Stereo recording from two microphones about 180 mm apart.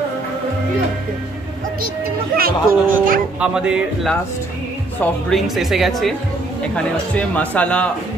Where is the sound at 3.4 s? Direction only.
5° right (ahead or behind).